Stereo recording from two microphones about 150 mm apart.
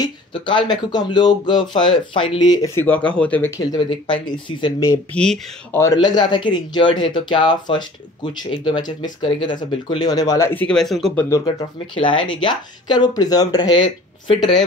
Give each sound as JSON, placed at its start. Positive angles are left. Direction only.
{"t": 0.0, "sound": "a man's voice", "side_deg": 30}
{"t": 4.3, "sound": "a man's voice", "side_deg": 30}
{"t": 5.1, "sound": "speech", "side_deg": 5}
{"t": 5.8, "sound": "a man's voice", "side_deg": 25}
{"t": 11.2, "sound": "a man's voice", "side_deg": 20}
{"t": 11.9, "sound": "a man's voice", "side_deg": 35}